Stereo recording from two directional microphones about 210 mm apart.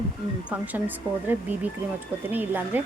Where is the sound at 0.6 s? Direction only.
10° right (ahead or behind).